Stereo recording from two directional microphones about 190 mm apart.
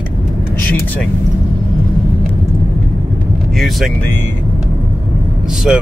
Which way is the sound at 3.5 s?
Centre (ahead or behind).